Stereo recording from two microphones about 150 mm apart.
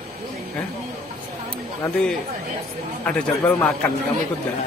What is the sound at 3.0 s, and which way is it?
Speech, 10° left (ahead or behind).